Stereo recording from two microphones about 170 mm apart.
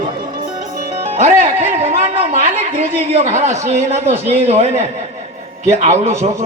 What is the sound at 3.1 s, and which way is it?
A man's voice, 45° right (ahead or behind).